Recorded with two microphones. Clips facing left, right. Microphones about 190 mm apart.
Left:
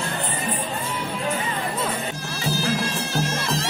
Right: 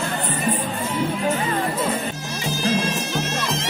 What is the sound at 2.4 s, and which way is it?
Bagpipes, 20° right (ahead or behind).